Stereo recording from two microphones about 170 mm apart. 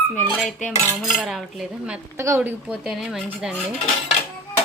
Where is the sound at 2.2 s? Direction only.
15° right (ahead or behind).